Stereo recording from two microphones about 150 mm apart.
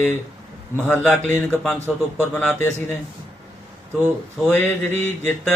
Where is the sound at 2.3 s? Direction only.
10° left (ahead or behind).